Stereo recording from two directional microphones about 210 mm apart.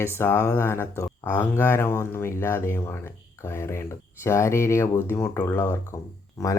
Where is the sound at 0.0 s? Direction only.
10° left (ahead or behind).